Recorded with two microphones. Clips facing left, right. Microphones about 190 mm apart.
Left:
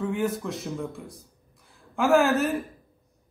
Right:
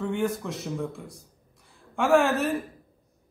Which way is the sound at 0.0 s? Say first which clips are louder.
Even; centre (ahead or behind).